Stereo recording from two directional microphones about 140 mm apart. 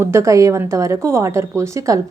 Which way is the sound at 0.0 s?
20° right (ahead or behind).